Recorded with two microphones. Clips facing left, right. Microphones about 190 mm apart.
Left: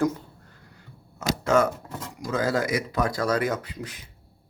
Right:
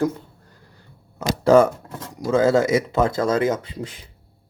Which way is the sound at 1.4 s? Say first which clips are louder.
Right 8 dB; 30° right (ahead or behind).